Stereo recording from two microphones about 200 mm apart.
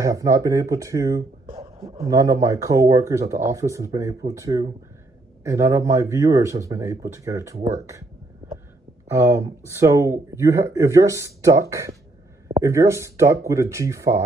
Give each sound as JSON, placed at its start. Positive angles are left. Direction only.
{"t": 0.0, "sound": "speech", "side_deg": -15}
{"t": 1.6, "sound": "a sound", "side_deg": -15}
{"t": 2.0, "sound": "speech", "side_deg": -15}
{"t": 9.1, "sound": "speech", "side_deg": -15}